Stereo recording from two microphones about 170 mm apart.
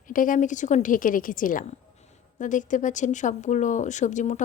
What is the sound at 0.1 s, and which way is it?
Speech, 50° left (ahead or behind).